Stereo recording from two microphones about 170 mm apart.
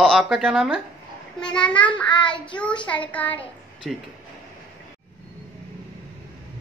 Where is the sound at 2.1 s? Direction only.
25° left (ahead or behind).